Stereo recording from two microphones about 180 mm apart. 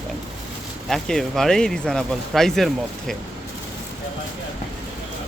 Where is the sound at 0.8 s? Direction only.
Centre (ahead or behind).